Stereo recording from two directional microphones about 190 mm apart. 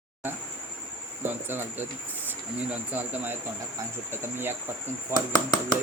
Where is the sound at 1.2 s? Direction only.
10° right (ahead or behind).